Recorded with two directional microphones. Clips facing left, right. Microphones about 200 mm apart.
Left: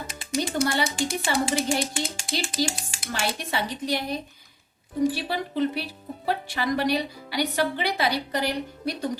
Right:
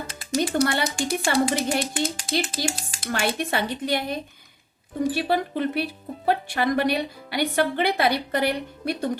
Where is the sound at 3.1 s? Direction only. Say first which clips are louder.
Right 4 dB; 55° right (ahead or behind).